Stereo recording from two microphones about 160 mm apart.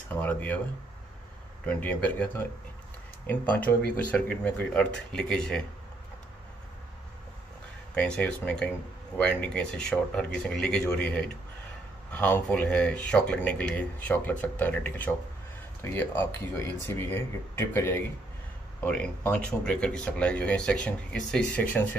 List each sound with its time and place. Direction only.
0.1 s speech: 10° left (ahead or behind)
1.7 s speech: 10° left (ahead or behind)
7.9 s speech: 10° left (ahead or behind)